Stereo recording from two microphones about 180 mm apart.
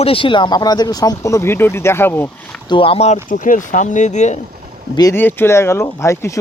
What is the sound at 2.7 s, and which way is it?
Speech, 30° left (ahead or behind).